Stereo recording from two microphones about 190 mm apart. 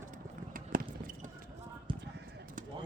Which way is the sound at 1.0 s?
45° right (ahead or behind).